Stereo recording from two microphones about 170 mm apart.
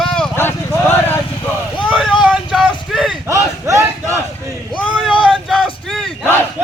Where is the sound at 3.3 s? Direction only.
15° right (ahead or behind).